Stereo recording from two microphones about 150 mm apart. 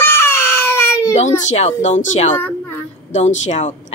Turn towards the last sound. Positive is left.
turn(degrees=50)  # may be behind; listen again after turning